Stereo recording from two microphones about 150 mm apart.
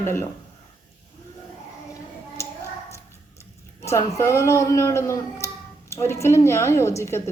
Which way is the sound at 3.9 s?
20° left (ahead or behind).